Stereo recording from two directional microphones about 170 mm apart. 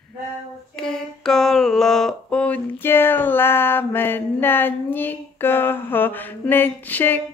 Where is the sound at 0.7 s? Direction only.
5° left (ahead or behind).